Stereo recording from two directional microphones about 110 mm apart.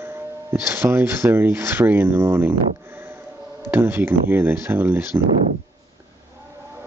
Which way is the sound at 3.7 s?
20° right (ahead or behind).